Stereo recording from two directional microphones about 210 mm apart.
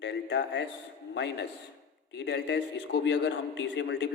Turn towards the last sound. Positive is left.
turn(degrees=55)  # may be behind; listen again after turning